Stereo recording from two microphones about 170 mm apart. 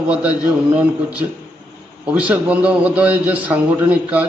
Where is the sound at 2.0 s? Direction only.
10° right (ahead or behind).